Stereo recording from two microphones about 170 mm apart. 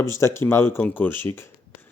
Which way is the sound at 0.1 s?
15° left (ahead or behind).